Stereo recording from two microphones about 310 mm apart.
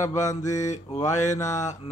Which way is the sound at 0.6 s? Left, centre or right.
Left.